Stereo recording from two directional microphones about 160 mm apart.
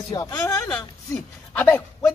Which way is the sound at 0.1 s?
25° left (ahead or behind).